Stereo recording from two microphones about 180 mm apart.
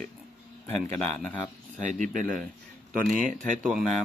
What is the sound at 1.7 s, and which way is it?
Speech, 45° right (ahead or behind).